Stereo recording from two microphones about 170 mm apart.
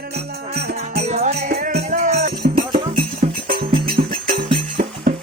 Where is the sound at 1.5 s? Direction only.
55° right (ahead or behind).